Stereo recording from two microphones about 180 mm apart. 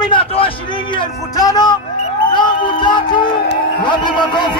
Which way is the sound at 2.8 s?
25° left (ahead or behind).